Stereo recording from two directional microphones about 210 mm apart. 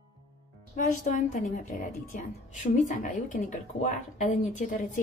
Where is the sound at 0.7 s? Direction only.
35° left (ahead or behind).